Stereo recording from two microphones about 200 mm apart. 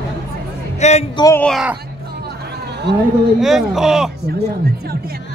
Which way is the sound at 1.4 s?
Centre (ahead or behind).